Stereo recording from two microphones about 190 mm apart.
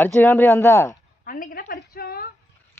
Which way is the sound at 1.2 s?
45° left (ahead or behind).